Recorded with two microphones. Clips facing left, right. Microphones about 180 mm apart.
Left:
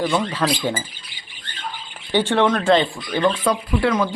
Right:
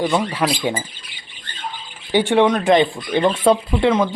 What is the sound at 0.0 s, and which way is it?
Speech, 20° right (ahead or behind).